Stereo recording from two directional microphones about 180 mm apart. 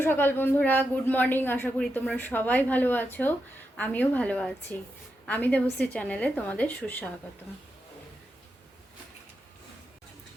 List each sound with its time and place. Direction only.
0.0 s a woman's voice: 10° left (ahead or behind)